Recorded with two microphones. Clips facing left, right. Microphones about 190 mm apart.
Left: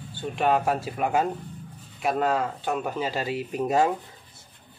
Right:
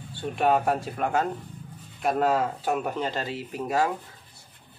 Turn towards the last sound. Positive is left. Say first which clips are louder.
# left 3 dB
turn(degrees=20)  # may be behind; listen again after turning